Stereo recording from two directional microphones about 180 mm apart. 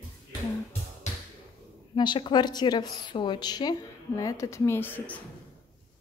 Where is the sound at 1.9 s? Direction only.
25° left (ahead or behind).